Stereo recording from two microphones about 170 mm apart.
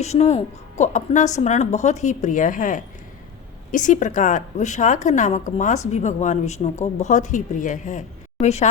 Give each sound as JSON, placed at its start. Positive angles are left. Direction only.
{"t": 0.0, "sound": "a woman's voice", "side_deg": 40}